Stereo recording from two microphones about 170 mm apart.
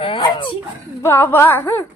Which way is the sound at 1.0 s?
15° left (ahead or behind).